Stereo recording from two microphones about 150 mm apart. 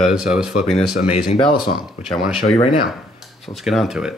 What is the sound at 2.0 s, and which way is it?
Speech, 5° right (ahead or behind).